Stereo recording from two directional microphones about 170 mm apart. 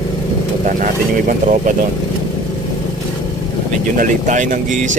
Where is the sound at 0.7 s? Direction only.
50° right (ahead or behind).